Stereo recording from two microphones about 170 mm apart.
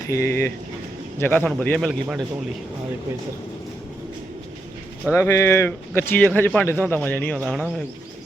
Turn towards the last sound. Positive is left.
turn(degrees=0)  # may be behind; listen again after turning